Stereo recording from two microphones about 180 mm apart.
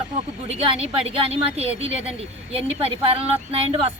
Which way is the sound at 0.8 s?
35° right (ahead or behind).